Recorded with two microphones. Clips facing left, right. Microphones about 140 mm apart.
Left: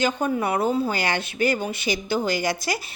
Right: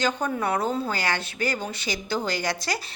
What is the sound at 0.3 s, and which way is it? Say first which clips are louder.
A woman's voice: left 3 dB; 10° left (ahead or behind).